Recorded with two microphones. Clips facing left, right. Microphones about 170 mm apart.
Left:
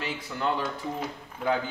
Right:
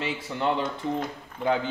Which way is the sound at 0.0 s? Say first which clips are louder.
Right 3 dB; 20° right (ahead or behind).